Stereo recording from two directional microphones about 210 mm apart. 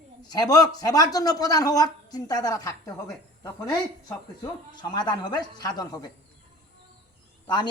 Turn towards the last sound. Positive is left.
turn(degrees=20)  # may be behind; listen again after turning